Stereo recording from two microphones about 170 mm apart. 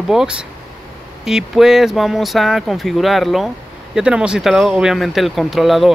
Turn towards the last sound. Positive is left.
turn(degrees=0)  # may be behind; listen again after turning